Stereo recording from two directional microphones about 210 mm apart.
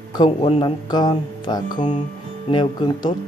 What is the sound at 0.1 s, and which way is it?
Speech, 25° left (ahead or behind).